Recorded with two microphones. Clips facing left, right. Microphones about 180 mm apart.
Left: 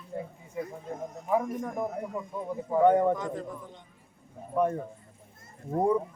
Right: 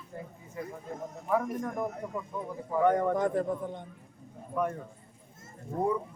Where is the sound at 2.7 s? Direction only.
20° left (ahead or behind).